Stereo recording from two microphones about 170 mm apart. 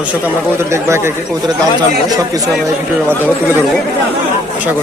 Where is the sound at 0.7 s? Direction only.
15° right (ahead or behind).